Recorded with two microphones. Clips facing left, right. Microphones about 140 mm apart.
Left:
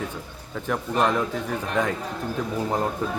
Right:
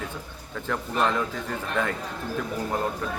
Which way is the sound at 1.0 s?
15° left (ahead or behind).